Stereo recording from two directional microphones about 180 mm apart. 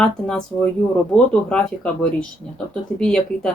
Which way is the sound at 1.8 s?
5° left (ahead or behind).